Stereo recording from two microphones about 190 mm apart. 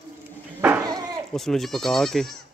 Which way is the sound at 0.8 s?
20° right (ahead or behind).